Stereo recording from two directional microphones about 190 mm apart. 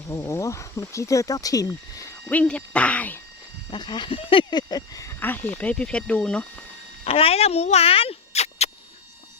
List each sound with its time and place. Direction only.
0.1 s speech: 15° left (ahead or behind)
3.7 s speech: 25° left (ahead or behind); by 6.7 s 5° left (ahead or behind)
7.0 s speech: 30° left (ahead or behind)